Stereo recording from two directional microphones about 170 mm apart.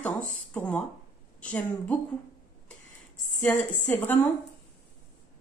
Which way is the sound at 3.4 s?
10° left (ahead or behind).